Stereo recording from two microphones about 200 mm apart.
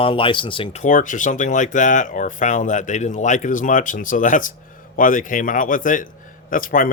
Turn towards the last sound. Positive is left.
turn(degrees=45)  # may be behind; listen again after turning